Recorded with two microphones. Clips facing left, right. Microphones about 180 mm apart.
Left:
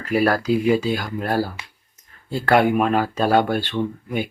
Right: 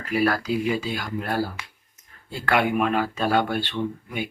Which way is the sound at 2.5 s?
40° left (ahead or behind).